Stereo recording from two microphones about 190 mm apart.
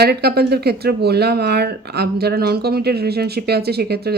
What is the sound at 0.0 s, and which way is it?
Speech, 55° right (ahead or behind).